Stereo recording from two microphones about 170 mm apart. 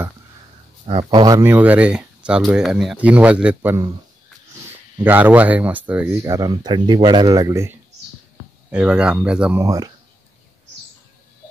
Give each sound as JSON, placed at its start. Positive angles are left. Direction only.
{"t": 0.8, "sound": "speech", "side_deg": -30}
{"t": 1.4, "sound": "speech", "side_deg": -10}
{"t": 4.9, "sound": "speech", "side_deg": -10}
{"t": 8.7, "sound": "speech", "side_deg": -5}
{"t": 9.6, "sound": "speech", "side_deg": -20}